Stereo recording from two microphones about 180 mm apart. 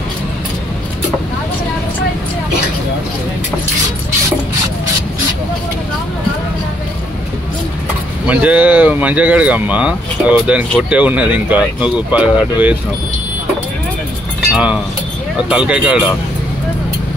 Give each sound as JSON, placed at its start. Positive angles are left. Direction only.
{"t": 8.3, "sound": "speech", "side_deg": -5}
{"t": 14.5, "sound": "speech", "side_deg": -5}